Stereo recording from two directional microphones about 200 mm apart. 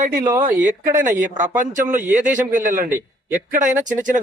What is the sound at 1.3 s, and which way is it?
Speech, 40° right (ahead or behind).